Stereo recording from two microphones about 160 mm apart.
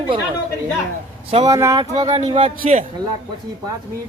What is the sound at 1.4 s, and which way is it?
Speech, 20° right (ahead or behind).